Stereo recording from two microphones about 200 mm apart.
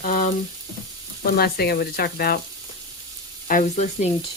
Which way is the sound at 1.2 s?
50° left (ahead or behind).